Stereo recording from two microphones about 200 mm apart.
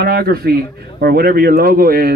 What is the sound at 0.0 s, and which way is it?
A man's voice, 50° right (ahead or behind).